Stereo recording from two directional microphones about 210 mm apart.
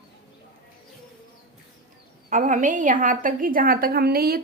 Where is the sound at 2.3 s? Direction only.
40° right (ahead or behind).